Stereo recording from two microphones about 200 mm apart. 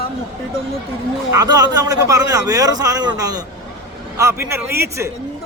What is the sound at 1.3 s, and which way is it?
A man's voice, 20° right (ahead or behind).